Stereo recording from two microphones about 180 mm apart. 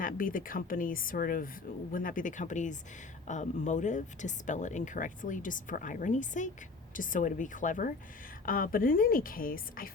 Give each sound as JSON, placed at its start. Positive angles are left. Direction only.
{"t": 0.0, "sound": "speech", "side_deg": 50}